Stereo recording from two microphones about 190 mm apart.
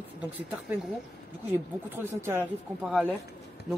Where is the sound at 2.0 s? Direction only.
10° right (ahead or behind).